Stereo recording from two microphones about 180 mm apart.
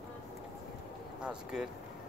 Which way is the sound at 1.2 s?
5° right (ahead or behind).